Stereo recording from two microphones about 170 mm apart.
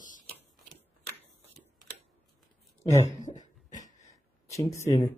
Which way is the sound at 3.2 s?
45° left (ahead or behind).